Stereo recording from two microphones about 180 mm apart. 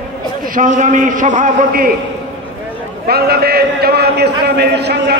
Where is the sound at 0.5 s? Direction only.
45° right (ahead or behind).